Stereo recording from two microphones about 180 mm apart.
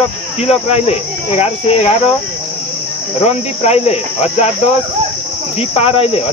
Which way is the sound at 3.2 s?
35° left (ahead or behind).